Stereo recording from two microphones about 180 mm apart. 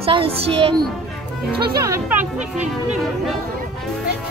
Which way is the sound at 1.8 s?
15° right (ahead or behind).